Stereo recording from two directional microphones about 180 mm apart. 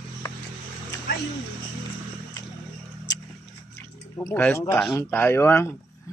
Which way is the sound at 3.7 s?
15° left (ahead or behind).